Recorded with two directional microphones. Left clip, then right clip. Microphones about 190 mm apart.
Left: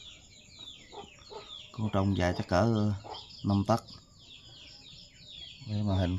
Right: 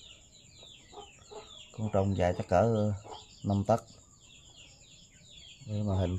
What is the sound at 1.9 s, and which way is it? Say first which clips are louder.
Speech: right 2 dB; 10° right (ahead or behind).